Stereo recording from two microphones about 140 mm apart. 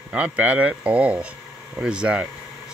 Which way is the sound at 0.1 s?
10° right (ahead or behind).